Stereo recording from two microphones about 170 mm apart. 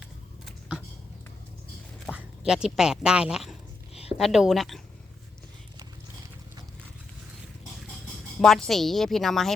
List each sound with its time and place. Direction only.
2.1 s a woman's voice: 5° right (ahead or behind)
8.4 s a woman's voice: 5° left (ahead or behind)